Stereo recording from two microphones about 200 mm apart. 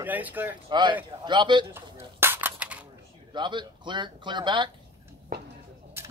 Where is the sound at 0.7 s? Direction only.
25° right (ahead or behind).